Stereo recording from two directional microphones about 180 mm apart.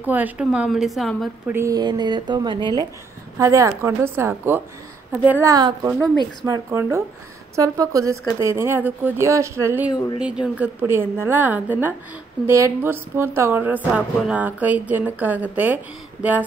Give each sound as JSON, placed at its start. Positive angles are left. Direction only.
{"t": 0.0, "sound": "a woman's voice", "side_deg": -10}
{"t": 1.5, "sound": "speech", "side_deg": -15}